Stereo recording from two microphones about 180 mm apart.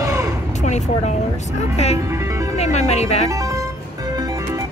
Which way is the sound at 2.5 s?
35° left (ahead or behind).